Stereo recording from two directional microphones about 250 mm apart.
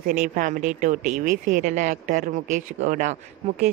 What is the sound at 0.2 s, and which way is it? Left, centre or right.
Speech, right.